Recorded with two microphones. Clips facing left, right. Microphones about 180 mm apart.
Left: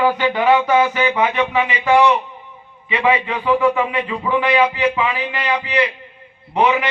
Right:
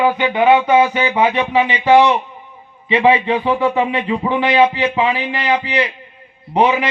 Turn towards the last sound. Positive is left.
turn(degrees=-30)  # may be behind; listen again after turning